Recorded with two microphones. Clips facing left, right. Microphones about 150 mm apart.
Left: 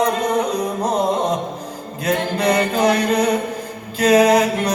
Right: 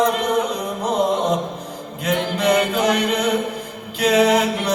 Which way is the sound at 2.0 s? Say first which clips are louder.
Left 1 dB; 35° left (ahead or behind).